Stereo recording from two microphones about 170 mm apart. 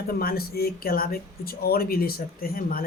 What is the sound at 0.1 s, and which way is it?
Speech, 65° left (ahead or behind).